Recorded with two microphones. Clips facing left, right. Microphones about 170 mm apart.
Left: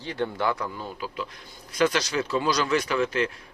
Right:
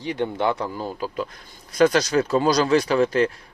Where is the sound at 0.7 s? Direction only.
35° right (ahead or behind).